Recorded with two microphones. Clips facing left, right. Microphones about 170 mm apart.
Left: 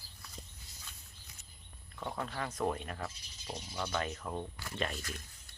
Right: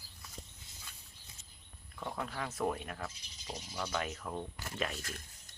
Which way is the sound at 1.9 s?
Centre (ahead or behind).